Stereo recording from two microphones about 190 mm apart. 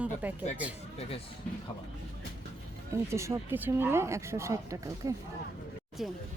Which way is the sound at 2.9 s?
15° right (ahead or behind).